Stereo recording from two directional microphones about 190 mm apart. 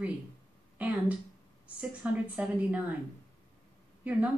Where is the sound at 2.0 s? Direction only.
5° right (ahead or behind).